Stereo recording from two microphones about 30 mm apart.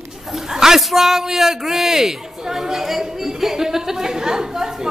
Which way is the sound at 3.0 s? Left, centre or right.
Centre.